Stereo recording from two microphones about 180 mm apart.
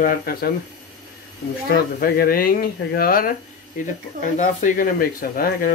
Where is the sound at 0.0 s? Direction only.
60° left (ahead or behind).